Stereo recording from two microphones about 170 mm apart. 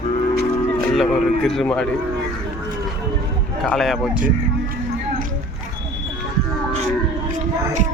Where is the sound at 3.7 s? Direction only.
Centre (ahead or behind).